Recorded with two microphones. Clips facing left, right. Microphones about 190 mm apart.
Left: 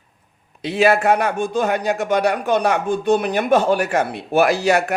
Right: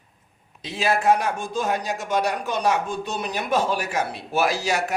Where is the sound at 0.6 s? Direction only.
60° left (ahead or behind).